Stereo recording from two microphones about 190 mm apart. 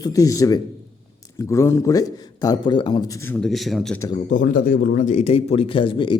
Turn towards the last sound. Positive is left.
turn(degrees=25)  # may be behind; listen again after turning